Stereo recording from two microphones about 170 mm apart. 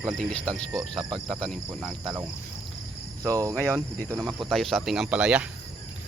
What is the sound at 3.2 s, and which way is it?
Speech, 20° right (ahead or behind).